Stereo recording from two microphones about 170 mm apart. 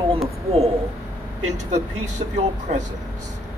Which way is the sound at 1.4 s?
40° right (ahead or behind).